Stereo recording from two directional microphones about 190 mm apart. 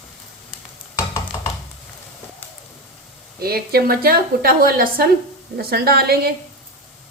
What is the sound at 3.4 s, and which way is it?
A woman's voice, 55° right (ahead or behind).